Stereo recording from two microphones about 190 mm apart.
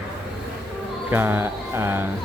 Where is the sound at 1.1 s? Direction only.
10° right (ahead or behind).